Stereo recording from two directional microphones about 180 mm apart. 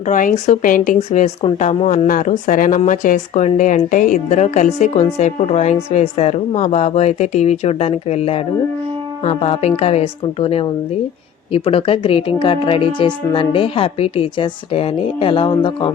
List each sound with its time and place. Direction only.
0.0 s a woman's voice: 45° left (ahead or behind); by 15.9 s 30° left (ahead or behind)